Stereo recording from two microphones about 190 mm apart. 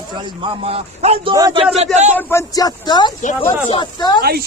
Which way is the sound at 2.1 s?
10° left (ahead or behind).